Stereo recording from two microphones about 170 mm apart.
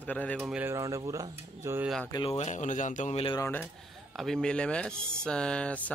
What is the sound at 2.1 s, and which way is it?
Speech, 35° left (ahead or behind).